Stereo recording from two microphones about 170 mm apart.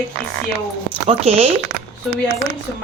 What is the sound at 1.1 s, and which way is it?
Speech, 35° right (ahead or behind).